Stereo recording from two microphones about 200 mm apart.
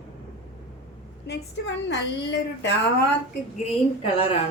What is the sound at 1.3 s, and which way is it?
A woman's voice, 60° left (ahead or behind).